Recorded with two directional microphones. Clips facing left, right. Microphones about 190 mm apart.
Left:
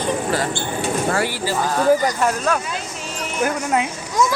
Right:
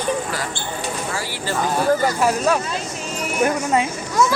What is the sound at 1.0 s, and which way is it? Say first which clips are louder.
Speech: left 7 dB; 60° left (ahead or behind).